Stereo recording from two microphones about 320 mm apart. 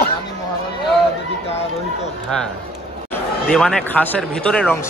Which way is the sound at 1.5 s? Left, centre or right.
Centre.